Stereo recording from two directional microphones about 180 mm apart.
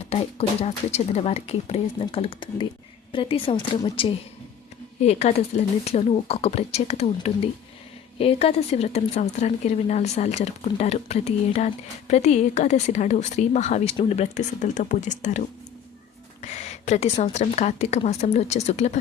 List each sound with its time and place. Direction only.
0.1 s speech: 35° left (ahead or behind)